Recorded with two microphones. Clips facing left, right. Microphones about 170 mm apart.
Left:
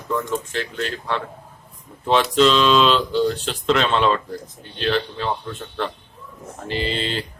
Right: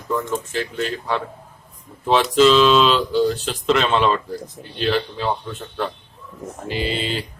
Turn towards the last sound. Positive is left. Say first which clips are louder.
# right 1 dB
turn(degrees=-10)  # may be behind; listen again after turning